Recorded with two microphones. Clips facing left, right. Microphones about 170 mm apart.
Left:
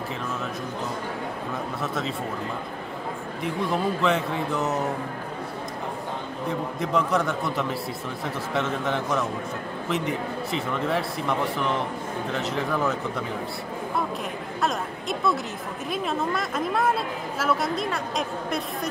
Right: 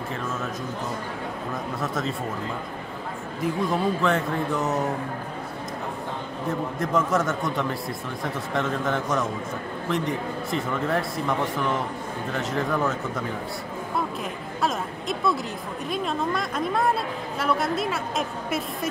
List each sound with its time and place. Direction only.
1.8 s a man's voice: centre (ahead or behind)
3.6 s a man's voice: centre (ahead or behind)
6.8 s a man's voice: centre (ahead or behind)
14.6 s a sound: centre (ahead or behind)
15.9 s a man's voice: centre (ahead or behind)